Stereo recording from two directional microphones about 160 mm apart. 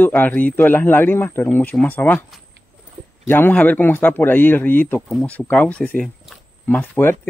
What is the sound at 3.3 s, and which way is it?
Speech, 15° left (ahead or behind).